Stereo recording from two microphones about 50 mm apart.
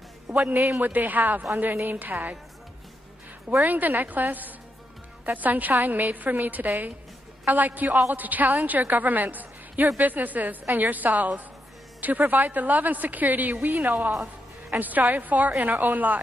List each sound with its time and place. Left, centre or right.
0.3 s a man's voice: centre
0.7 s a woman's voice: right
3.6 s a woman's voice: right